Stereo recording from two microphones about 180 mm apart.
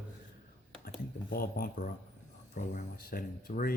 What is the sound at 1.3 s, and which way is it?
Speech, 55° left (ahead or behind).